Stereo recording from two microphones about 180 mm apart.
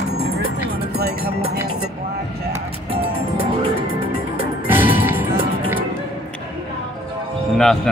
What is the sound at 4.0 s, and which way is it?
Music, 50° left (ahead or behind).